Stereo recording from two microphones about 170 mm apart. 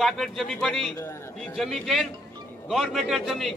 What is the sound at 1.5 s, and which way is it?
A man's voice, centre (ahead or behind).